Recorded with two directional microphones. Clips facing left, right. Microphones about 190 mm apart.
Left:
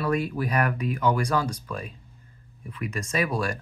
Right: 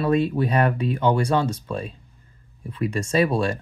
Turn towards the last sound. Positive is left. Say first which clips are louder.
# right 6 dB
turn(degrees=-25)  # may be behind; listen again after turning